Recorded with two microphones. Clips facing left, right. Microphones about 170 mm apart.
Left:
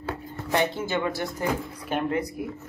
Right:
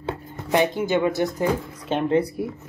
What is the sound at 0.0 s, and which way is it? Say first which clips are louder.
Speech: right 2 dB; 15° right (ahead or behind).